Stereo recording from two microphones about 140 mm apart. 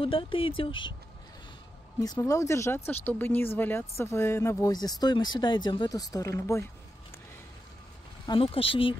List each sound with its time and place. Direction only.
0.0 s speech: 40° left (ahead or behind)
2.0 s speech: 25° left (ahead or behind)
8.3 s speech: 40° left (ahead or behind)